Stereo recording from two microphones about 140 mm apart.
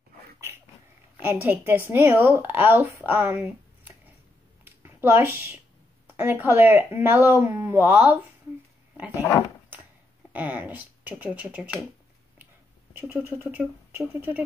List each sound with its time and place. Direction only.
1.2 s a woman's voice: 15° right (ahead or behind)
4.6 s a sound: 15° right (ahead or behind)
6.1 s a woman's voice: 15° right (ahead or behind)
10.3 s a woman's voice: 10° right (ahead or behind)
13.1 s a woman's voice: 15° right (ahead or behind)